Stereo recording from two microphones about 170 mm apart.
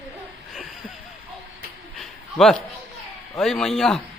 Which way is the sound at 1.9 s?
Centre (ahead or behind).